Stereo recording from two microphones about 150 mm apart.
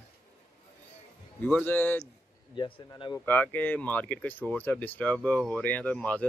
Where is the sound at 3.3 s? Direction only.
10° left (ahead or behind).